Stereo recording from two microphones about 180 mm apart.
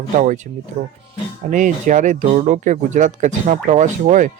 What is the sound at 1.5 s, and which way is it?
Speech, 45° right (ahead or behind).